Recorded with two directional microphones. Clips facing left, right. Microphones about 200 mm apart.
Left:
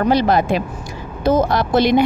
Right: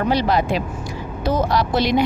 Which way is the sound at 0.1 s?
50° left (ahead or behind).